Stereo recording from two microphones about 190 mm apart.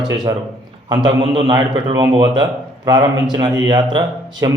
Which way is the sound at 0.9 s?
25° right (ahead or behind).